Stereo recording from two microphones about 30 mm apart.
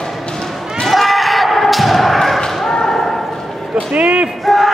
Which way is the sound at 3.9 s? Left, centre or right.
Right.